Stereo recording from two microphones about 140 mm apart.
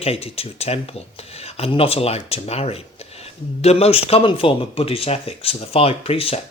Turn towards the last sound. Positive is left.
turn(degrees=40)  # may be behind; listen again after turning